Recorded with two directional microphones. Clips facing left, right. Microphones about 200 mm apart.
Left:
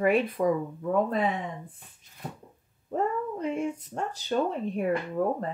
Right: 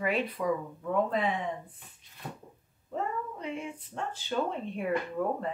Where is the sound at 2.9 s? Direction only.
45° left (ahead or behind).